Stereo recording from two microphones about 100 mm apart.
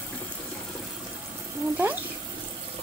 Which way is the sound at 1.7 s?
20° right (ahead or behind).